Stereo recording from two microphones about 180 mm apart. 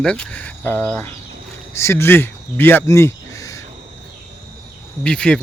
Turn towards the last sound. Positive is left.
turn(degrees=5)  # may be behind; listen again after turning